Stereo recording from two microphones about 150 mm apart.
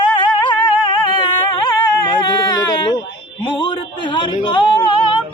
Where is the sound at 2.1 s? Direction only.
30° left (ahead or behind).